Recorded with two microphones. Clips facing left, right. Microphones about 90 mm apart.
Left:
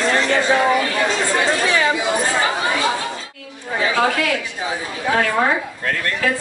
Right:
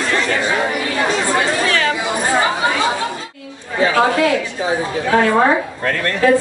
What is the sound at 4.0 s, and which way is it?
A woman's voice, 30° right (ahead or behind).